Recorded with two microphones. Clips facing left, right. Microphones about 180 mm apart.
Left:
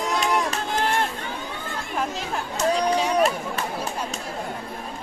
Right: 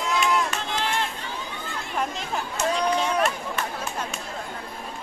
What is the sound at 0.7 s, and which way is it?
Run, 50° left (ahead or behind).